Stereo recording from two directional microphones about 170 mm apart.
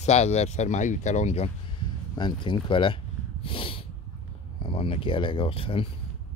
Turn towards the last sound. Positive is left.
turn(degrees=30)  # may be behind; listen again after turning